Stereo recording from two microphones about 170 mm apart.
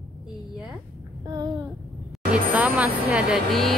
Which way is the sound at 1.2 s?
25° right (ahead or behind).